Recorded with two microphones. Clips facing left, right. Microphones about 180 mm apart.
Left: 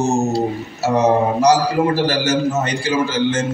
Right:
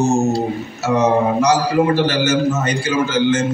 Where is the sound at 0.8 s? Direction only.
35° left (ahead or behind).